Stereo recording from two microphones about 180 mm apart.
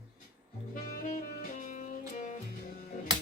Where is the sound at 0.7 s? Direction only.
45° left (ahead or behind).